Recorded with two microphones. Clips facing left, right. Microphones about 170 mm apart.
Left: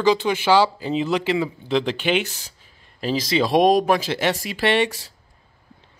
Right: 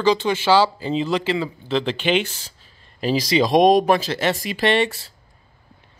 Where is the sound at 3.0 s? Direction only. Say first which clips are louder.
Right 2 dB; 5° right (ahead or behind).